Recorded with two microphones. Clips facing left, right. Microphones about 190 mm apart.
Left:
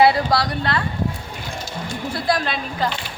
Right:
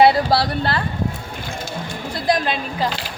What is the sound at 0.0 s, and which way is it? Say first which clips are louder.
Speech: right 2 dB; 30° right (ahead or behind).